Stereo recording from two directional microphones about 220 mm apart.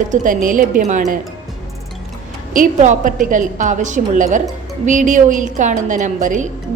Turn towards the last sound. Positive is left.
turn(degrees=-35)  # may be behind; listen again after turning